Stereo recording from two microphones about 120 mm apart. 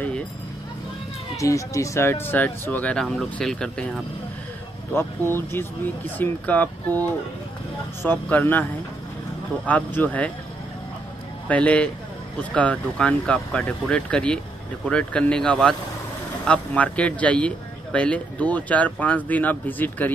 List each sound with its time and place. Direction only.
1.4 s speech: 25° left (ahead or behind); by 4.0 s 5° left (ahead or behind)
4.9 s speech: 20° left (ahead or behind)
8.0 s speech: 15° left (ahead or behind)
9.7 s speech: 15° left (ahead or behind)
11.4 s speech: 10° left (ahead or behind)